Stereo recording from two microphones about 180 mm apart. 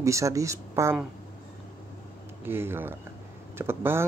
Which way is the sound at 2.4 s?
10° right (ahead or behind).